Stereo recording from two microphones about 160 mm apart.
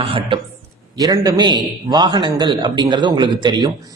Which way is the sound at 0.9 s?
20° right (ahead or behind).